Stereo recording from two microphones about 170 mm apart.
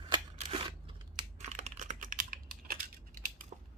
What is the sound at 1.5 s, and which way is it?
Typing, 45° right (ahead or behind).